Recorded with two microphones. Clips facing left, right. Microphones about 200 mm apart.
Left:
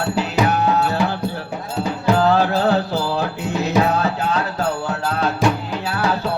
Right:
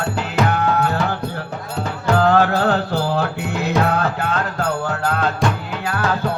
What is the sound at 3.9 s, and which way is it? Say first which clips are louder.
Music: left 1 dB; 55° right (ahead or behind).